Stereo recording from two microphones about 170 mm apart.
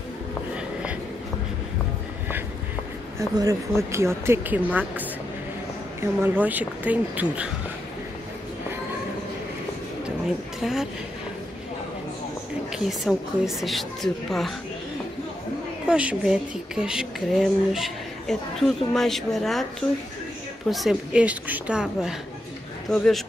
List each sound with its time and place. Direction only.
3.2 s speech: 20° right (ahead or behind)
10.6 s speech: centre (ahead or behind)
12.7 s speech: 5° right (ahead or behind)
15.9 s speech: 5° right (ahead or behind)
20.7 s speech: 5° right (ahead or behind)